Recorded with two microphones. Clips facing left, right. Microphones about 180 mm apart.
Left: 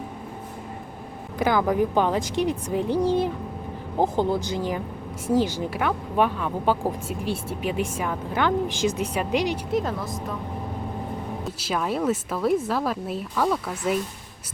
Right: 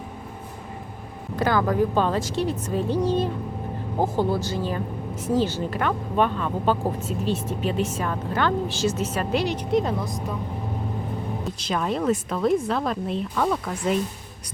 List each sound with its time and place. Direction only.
1.4 s speech: 15° left (ahead or behind)
9.8 s speech: centre (ahead or behind)
11.6 s speech: 5° left (ahead or behind)